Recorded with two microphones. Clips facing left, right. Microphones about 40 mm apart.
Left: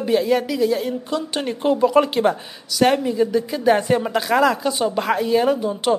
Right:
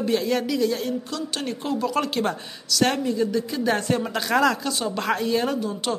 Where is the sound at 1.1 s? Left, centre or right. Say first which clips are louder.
Left 5 dB; left.